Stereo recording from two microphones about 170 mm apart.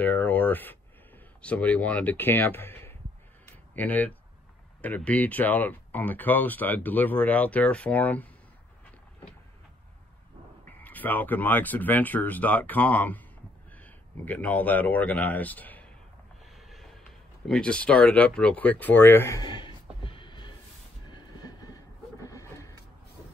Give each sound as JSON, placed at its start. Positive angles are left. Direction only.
{"t": 0.0, "sound": "a sound", "side_deg": 10}
{"t": 1.4, "sound": "speech", "side_deg": 10}
{"t": 10.6, "sound": "speech", "side_deg": 10}
{"t": 16.4, "sound": "snort", "side_deg": 0}
{"t": 17.5, "sound": "speech", "side_deg": 5}
{"t": 21.1, "sound": "train", "side_deg": 25}
{"t": 22.2, "sound": "a sound", "side_deg": 20}